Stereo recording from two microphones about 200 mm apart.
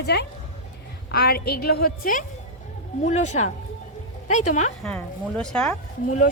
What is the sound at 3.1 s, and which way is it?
Speech, 35° left (ahead or behind).